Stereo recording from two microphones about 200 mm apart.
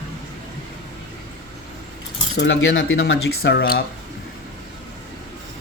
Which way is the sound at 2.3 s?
65° left (ahead or behind).